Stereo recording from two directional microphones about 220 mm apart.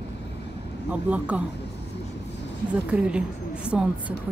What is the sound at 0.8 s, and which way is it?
Speech, 5° right (ahead or behind).